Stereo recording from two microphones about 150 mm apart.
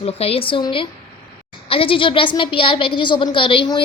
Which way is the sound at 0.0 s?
40° left (ahead or behind).